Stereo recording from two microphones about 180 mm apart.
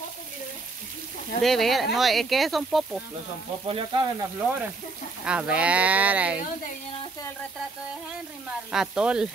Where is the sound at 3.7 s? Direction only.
30° right (ahead or behind).